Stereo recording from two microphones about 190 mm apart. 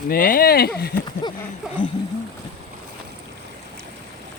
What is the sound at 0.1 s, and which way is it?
Speech, 50° left (ahead or behind).